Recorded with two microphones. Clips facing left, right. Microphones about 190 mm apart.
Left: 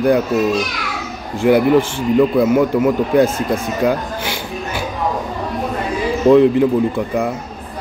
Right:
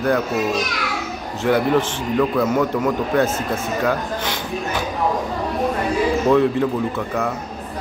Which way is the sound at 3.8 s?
10° left (ahead or behind).